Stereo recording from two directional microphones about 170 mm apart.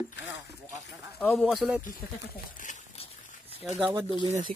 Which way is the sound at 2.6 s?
45° left (ahead or behind).